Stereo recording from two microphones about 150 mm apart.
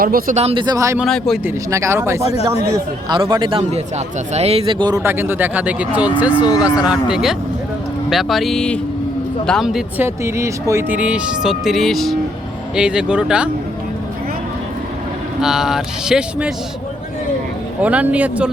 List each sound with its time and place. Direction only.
0.0 s speech: 75° right (ahead or behind)
0.3 s speech: 45° right (ahead or behind)
0.6 s speech: 25° right (ahead or behind)
0.9 s speech: centre (ahead or behind)
1.5 s speech: 20° right (ahead or behind)
3.6 s speech: 45° right (ahead or behind); by 6.4 s 10° right (ahead or behind)
6.4 s speech: 25° left (ahead or behind)
6.8 s speech: 5° right (ahead or behind)
10.0 s speech: 20° right (ahead or behind)
15.4 s speech: 5° right (ahead or behind)
17.8 s speech: 10° right (ahead or behind)